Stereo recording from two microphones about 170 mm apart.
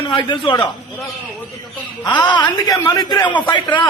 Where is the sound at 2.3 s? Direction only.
25° left (ahead or behind).